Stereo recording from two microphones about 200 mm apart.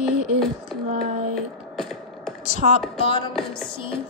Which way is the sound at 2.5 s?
30° left (ahead or behind).